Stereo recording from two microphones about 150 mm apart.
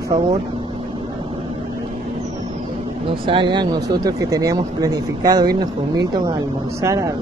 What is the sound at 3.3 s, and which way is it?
Speech, 35° right (ahead or behind).